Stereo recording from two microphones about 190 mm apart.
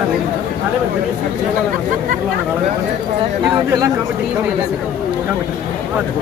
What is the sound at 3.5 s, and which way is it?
Speech, 20° right (ahead or behind).